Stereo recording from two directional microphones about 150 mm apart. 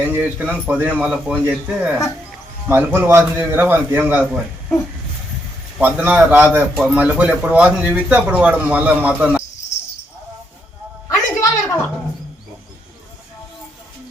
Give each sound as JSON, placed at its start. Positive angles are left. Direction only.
{"t": 0.0, "sound": "speech", "side_deg": -10}
{"t": 5.8, "sound": "speech", "side_deg": -10}
{"t": 11.1, "sound": "a sound", "side_deg": 20}